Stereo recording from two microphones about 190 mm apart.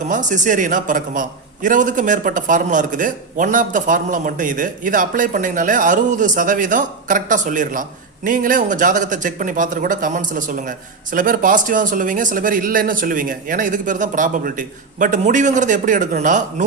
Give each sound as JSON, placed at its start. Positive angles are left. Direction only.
{"t": 0.0, "sound": "a man's voice", "side_deg": -40}